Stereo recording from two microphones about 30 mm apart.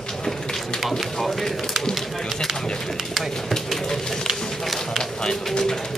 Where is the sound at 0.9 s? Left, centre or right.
Centre.